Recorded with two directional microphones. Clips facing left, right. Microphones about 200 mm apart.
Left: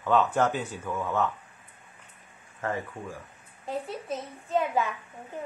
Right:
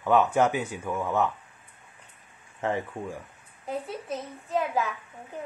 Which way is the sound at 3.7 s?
Centre (ahead or behind).